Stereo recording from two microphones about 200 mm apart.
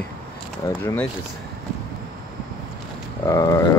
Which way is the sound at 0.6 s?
20° left (ahead or behind).